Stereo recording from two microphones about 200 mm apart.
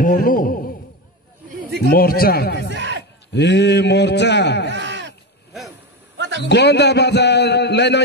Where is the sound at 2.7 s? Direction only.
60° right (ahead or behind).